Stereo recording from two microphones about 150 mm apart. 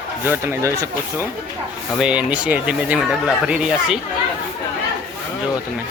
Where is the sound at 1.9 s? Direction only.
10° right (ahead or behind).